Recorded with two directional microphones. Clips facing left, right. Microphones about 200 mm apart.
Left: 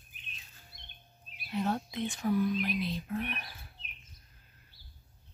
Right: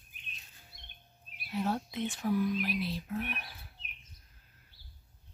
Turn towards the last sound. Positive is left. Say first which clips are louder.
# left 1 dB
turn(degrees=-5)  # may be behind; listen again after turning